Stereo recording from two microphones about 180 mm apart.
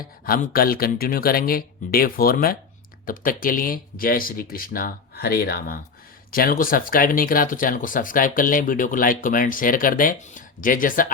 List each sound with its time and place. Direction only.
0.0 s speech: 55° left (ahead or behind)